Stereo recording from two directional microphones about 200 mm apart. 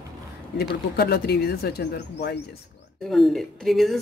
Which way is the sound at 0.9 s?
55° left (ahead or behind).